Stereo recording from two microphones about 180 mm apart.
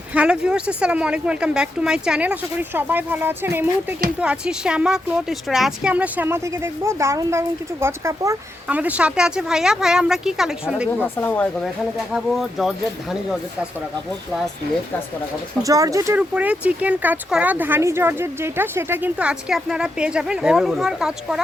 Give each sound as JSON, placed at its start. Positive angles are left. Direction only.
{"t": 0.1, "sound": "speech", "side_deg": -5}
{"t": 11.0, "sound": "speech", "side_deg": 10}
{"t": 15.6, "sound": "speech", "side_deg": -20}
{"t": 16.3, "sound": "speech", "side_deg": -5}